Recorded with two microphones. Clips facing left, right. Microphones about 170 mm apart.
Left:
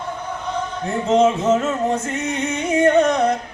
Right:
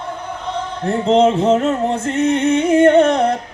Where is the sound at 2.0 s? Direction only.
60° right (ahead or behind).